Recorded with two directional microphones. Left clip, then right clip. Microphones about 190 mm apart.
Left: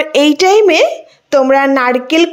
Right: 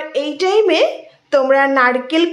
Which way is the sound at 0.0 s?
50° left (ahead or behind).